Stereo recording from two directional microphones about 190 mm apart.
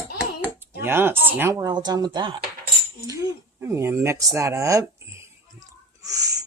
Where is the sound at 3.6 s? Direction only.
15° right (ahead or behind).